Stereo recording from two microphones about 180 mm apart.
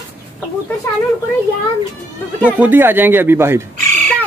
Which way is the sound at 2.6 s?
10° right (ahead or behind).